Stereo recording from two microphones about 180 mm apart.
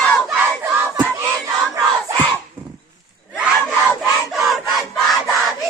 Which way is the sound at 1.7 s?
20° right (ahead or behind).